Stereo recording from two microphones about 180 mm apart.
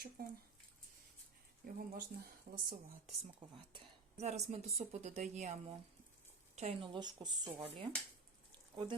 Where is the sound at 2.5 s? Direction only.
55° right (ahead or behind).